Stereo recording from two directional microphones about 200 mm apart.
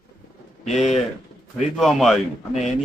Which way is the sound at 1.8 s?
Centre (ahead or behind).